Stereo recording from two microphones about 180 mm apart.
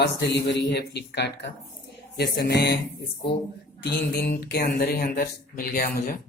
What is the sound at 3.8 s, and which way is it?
Speech, 60° left (ahead or behind).